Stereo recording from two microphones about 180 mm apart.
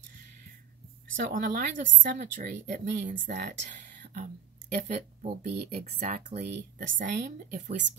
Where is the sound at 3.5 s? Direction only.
45° right (ahead or behind).